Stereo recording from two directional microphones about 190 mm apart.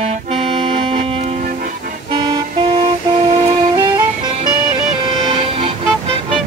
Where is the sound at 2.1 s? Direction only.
20° right (ahead or behind).